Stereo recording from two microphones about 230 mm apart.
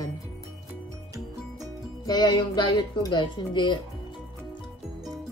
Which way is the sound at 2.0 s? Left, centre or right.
Centre.